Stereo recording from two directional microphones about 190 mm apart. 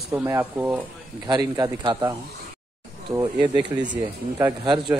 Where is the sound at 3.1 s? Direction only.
15° right (ahead or behind).